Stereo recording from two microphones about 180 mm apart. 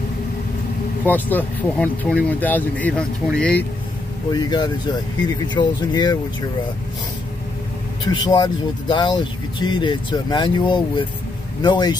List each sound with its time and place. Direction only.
1.0 s speech: 10° left (ahead or behind)
4.3 s speech: 25° left (ahead or behind)
8.0 s speech: 25° left (ahead or behind)